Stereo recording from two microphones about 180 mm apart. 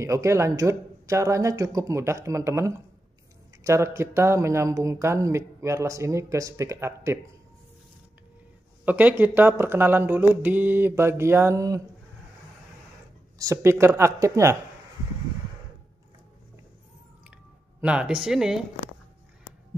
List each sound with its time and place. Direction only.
0.0 s speech: 15° right (ahead or behind)
8.8 s speech: 10° right (ahead or behind)
13.4 s speech: 15° right (ahead or behind)
17.7 s speech: 5° right (ahead or behind)